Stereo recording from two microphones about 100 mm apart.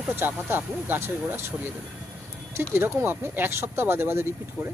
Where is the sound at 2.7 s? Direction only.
25° right (ahead or behind).